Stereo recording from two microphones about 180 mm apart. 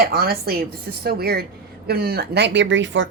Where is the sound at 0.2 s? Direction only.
60° right (ahead or behind).